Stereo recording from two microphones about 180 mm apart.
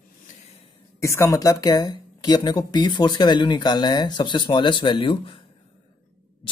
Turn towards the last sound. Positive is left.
turn(degrees=30)  # may be behind; listen again after turning